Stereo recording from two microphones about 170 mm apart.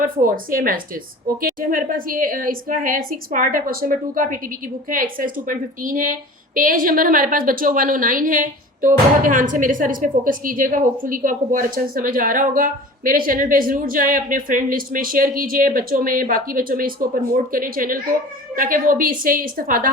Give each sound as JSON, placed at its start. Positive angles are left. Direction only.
{"t": 0.0, "sound": "a woman's voice", "side_deg": -55}